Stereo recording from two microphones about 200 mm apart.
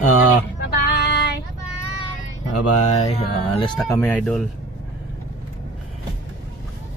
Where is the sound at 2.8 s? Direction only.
35° left (ahead or behind).